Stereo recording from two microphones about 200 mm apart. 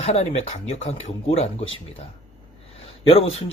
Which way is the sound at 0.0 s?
30° left (ahead or behind).